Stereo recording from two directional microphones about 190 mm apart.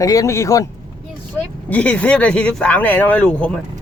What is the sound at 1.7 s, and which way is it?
Speech, 5° left (ahead or behind).